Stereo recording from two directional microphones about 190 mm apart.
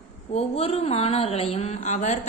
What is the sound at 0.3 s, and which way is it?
A woman's voice, 30° left (ahead or behind).